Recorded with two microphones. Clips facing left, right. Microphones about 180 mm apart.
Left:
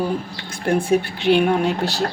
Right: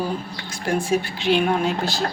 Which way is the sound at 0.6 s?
60° left (ahead or behind).